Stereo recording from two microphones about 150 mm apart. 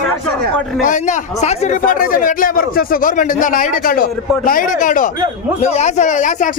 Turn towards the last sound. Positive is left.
turn(degrees=55)  # may be behind; listen again after turning